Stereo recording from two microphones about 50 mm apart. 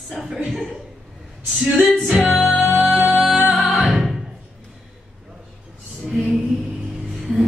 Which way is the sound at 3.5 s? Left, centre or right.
Centre.